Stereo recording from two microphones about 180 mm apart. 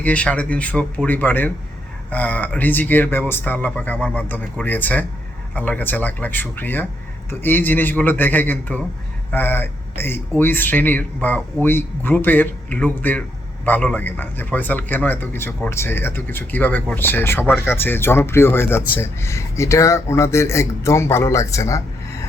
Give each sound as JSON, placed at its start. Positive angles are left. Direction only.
{"t": 0.0, "sound": "speech", "side_deg": 5}